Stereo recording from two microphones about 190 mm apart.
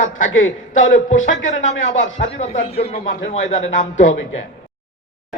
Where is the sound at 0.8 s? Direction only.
40° left (ahead or behind).